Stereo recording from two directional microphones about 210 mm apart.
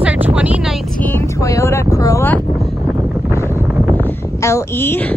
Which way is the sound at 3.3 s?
15° left (ahead or behind).